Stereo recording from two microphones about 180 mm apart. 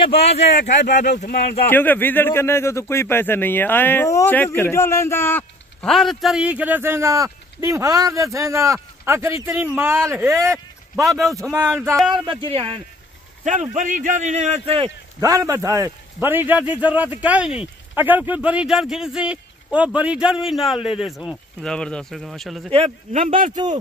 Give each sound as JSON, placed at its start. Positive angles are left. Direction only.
{"t": 0.0, "sound": "speech", "side_deg": 35}
{"t": 1.2, "sound": "speech", "side_deg": 60}
{"t": 1.7, "sound": "a man's voice", "side_deg": 10}
{"t": 11.1, "sound": "speech", "side_deg": 0}
{"t": 11.5, "sound": "a man's voice", "side_deg": -15}
{"t": 12.1, "sound": "speech", "side_deg": -25}
{"t": 13.4, "sound": "a man's voice", "side_deg": -40}
{"t": 15.1, "sound": "a man's voice", "side_deg": -20}
{"t": 22.7, "sound": "a man's voice", "side_deg": -35}